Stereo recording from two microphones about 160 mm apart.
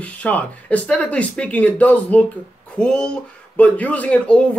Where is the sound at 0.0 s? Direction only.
10° left (ahead or behind).